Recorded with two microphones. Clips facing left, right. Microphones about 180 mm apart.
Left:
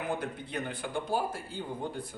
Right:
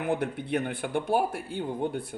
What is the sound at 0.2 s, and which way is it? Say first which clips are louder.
Speech: right 7 dB; 65° right (ahead or behind).